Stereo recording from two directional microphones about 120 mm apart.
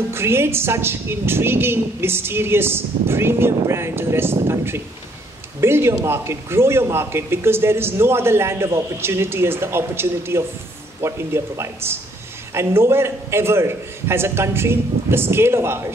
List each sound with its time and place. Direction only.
0.1 s a man's voice: 20° right (ahead or behind)